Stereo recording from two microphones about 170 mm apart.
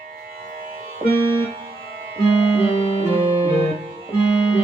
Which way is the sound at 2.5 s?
35° left (ahead or behind).